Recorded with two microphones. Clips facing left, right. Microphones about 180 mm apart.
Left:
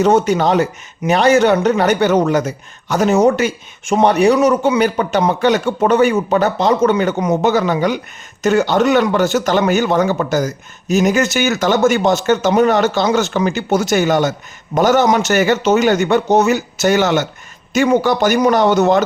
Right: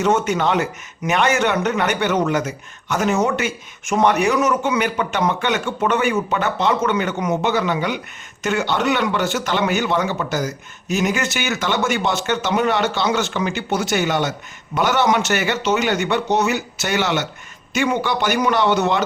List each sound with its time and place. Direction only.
0.0 s a man's voice: 35° left (ahead or behind)